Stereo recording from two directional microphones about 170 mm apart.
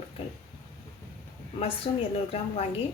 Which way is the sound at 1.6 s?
35° left (ahead or behind).